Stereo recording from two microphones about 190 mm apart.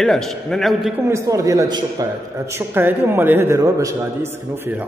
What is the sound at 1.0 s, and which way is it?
A man's voice, 15° right (ahead or behind).